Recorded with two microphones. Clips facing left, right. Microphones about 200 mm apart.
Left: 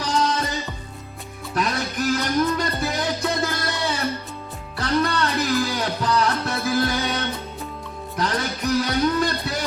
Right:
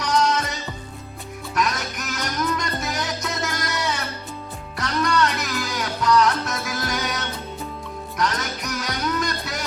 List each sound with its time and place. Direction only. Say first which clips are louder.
0.0 s music: right 1 dB; 30° left (ahead or behind)